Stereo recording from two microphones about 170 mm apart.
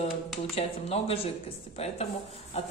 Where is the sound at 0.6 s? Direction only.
35° left (ahead or behind).